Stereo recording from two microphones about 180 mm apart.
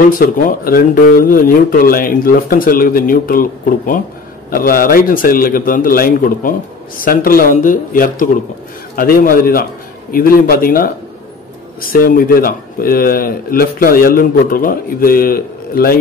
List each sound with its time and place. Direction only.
0.2 s speech: 50° left (ahead or behind)